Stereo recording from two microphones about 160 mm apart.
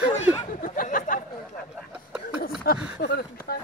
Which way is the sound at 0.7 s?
60° left (ahead or behind).